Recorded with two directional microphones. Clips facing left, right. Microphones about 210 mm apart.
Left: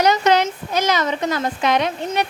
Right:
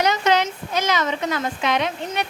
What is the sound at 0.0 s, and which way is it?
A woman's voice, 40° left (ahead or behind).